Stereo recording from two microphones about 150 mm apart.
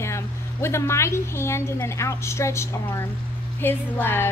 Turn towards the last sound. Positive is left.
turn(degrees=15)  # may be behind; listen again after turning